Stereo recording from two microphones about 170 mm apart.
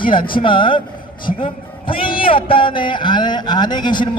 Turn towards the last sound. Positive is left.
turn(degrees=25)  # may be behind; listen again after turning